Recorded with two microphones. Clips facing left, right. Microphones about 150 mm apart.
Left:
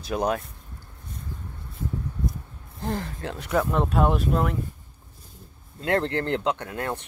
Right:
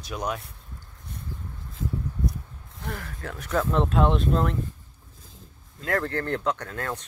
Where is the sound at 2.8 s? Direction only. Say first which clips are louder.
Left 6 dB; 25° left (ahead or behind); by 4.6 s 5° left (ahead or behind).